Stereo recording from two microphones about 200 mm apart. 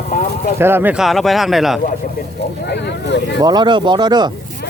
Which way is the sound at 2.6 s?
60° left (ahead or behind).